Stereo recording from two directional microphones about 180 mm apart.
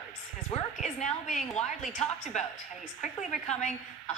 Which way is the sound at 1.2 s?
40° left (ahead or behind).